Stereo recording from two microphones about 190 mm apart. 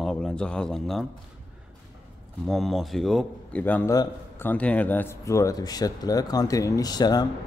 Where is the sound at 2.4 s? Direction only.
Centre (ahead or behind).